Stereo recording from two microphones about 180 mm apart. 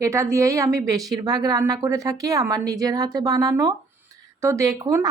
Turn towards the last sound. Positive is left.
turn(degrees=-20)  # may be behind; listen again after turning